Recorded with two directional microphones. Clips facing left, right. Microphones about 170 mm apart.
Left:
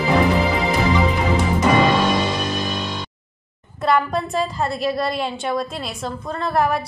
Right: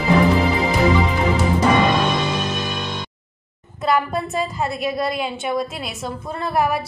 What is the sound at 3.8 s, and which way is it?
A woman's voice, centre (ahead or behind).